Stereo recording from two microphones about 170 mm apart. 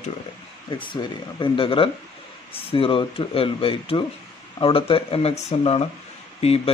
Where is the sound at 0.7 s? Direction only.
30° left (ahead or behind).